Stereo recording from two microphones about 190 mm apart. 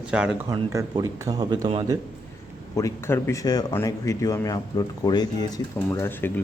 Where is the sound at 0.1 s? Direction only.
5° right (ahead or behind).